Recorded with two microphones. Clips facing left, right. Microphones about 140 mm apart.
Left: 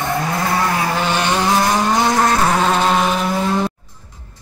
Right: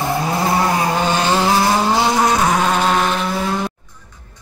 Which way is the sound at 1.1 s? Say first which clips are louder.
Right 1 dB; 35° right (ahead or behind).